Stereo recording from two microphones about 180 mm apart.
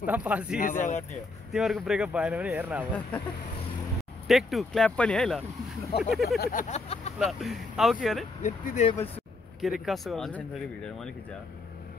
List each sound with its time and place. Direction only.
0.0 s speech: 10° right (ahead or behind)
0.6 s speech: 45° left (ahead or behind)
1.5 s speech: centre (ahead or behind)
4.3 s speech: centre (ahead or behind)
6.2 s a sound: 60° left (ahead or behind)
6.7 s speech: 35° left (ahead or behind)
7.2 s speech: centre (ahead or behind)
8.4 s speech: 45° left (ahead or behind)
9.6 s speech: centre (ahead or behind)